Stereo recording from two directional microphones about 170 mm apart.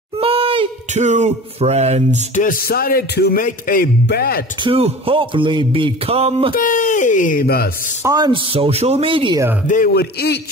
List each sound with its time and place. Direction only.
0.2 s speech: 35° right (ahead or behind)
2.3 s speech: 55° left (ahead or behind)
4.6 s speech: 35° right (ahead or behind)
6.5 s speech: 50° left (ahead or behind)
8.0 s speech: 25° right (ahead or behind)
9.9 s speech: 70° left (ahead or behind)